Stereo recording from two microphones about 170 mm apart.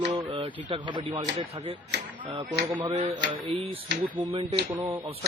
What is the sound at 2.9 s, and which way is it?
Speech, 40° right (ahead or behind).